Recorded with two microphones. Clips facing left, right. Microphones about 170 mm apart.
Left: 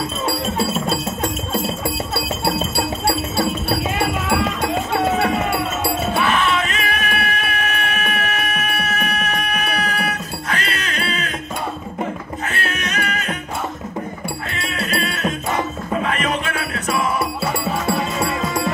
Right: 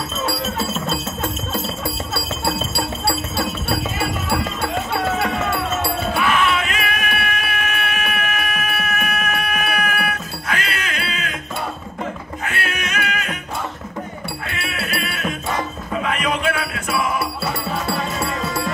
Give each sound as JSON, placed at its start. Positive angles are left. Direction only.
{"t": 4.3, "sound": "music", "side_deg": 20}
{"t": 6.1, "sound": "music", "side_deg": 40}
{"t": 10.5, "sound": "a sound", "side_deg": 40}
{"t": 12.4, "sound": "music", "side_deg": 40}
{"t": 14.8, "sound": "music", "side_deg": 35}